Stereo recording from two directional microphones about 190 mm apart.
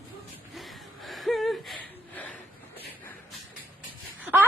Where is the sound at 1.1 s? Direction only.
Centre (ahead or behind).